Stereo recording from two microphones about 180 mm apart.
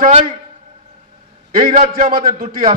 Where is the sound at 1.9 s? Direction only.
55° right (ahead or behind).